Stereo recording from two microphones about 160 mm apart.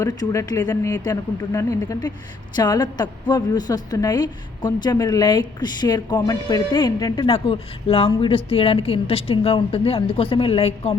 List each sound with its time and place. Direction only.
0.0 s a woman's voice: 20° left (ahead or behind); by 10.9 s 35° left (ahead or behind)